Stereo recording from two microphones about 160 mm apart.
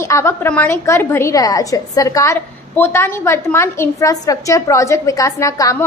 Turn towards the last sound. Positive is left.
turn(degrees=20)  # may be behind; listen again after turning